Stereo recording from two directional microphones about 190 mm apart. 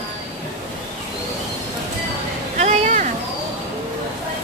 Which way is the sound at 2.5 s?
40° right (ahead or behind).